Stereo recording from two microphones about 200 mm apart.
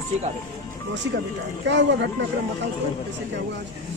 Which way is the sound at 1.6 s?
60° right (ahead or behind).